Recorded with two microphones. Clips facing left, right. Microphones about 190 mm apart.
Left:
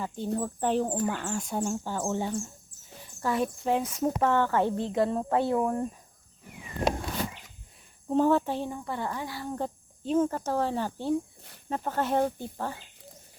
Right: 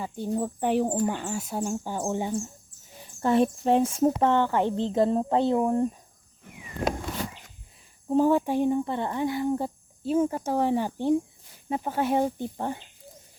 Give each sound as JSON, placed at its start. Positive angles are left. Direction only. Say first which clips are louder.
{"t": 0.3, "sound": "speech", "louder": "right 3 dB", "side_deg": -15}
{"t": 1.8, "sound": "speech", "louder": "right 1 dB", "side_deg": -15}
{"t": 3.2, "sound": "speech", "louder": "right 6 dB", "side_deg": -30}
{"t": 4.9, "sound": "speech", "louder": "right 3 dB", "side_deg": -30}
{"t": 8.0, "sound": "speech", "louder": "right 2 dB", "side_deg": -10}